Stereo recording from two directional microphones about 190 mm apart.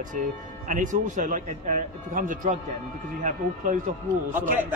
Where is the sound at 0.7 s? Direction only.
40° right (ahead or behind).